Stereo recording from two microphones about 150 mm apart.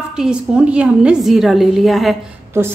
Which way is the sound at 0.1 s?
5° right (ahead or behind).